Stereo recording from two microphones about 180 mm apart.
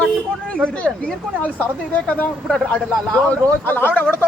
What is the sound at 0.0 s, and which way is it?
Speech, 5° left (ahead or behind).